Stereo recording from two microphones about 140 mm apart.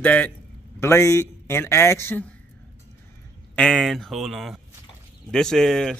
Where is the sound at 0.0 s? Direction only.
10° left (ahead or behind).